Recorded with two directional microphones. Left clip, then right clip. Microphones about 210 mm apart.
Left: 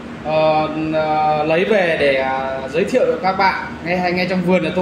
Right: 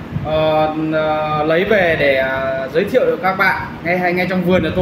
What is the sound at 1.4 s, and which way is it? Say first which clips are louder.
Speech: right 2 dB; centre (ahead or behind).